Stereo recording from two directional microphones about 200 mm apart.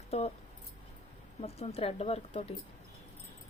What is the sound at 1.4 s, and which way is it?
A woman's voice, 30° left (ahead or behind).